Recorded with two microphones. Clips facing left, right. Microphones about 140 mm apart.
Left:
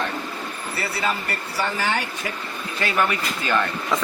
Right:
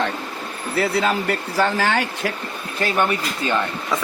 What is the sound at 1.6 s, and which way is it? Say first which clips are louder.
Speech: right 4 dB; 75° right (ahead or behind).